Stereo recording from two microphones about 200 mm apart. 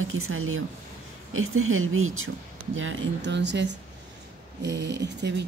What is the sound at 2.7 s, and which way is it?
Speech, 70° right (ahead or behind).